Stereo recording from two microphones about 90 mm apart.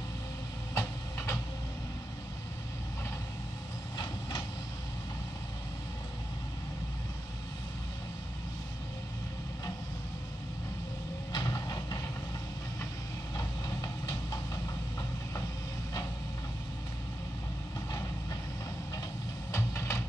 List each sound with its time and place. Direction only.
0.7 s train: 30° left (ahead or behind)
4.0 s vehicle: 50° left (ahead or behind)
11.3 s vehicle: 45° left (ahead or behind)
13.4 s vehicle: 45° left (ahead or behind)
19.5 s vehicle: 30° left (ahead or behind)